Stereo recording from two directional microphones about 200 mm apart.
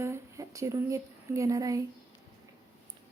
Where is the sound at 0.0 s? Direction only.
15° right (ahead or behind).